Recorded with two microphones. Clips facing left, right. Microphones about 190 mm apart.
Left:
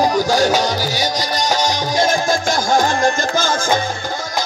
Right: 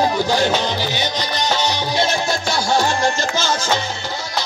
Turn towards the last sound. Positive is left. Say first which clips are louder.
# left 3 dB
turn(degrees=50)  # may be behind; listen again after turning